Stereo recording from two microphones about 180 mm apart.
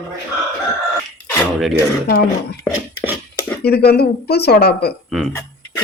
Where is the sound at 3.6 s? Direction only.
60° left (ahead or behind).